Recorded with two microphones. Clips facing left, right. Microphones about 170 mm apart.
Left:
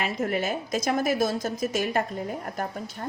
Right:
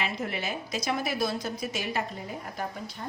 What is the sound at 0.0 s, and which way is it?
A woman's voice, 45° left (ahead or behind).